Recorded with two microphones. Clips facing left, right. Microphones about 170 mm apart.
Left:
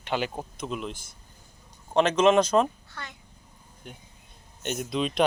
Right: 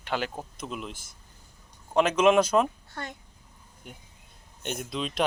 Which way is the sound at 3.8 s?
5° right (ahead or behind).